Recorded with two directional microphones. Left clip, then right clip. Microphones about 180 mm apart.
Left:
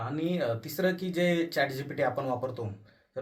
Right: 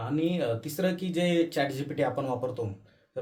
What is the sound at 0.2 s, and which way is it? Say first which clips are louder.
Speech: right 2 dB; 15° right (ahead or behind).